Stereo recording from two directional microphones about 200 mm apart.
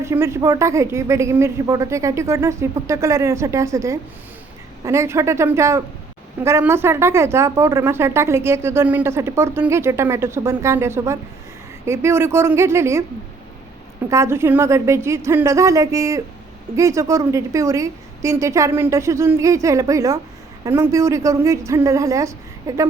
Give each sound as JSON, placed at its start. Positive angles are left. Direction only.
{"t": 0.0, "sound": "a woman's voice", "side_deg": -15}
{"t": 14.1, "sound": "a woman's voice", "side_deg": -15}